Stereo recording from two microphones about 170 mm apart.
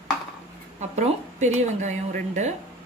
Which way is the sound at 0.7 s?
45° right (ahead or behind).